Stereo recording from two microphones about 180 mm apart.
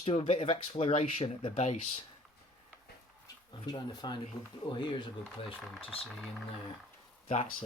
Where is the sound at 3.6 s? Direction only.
25° left (ahead or behind).